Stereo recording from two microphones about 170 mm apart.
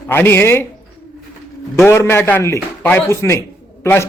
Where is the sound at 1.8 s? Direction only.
15° left (ahead or behind).